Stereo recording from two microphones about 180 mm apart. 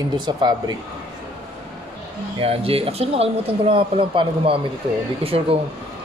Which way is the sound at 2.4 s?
30° right (ahead or behind).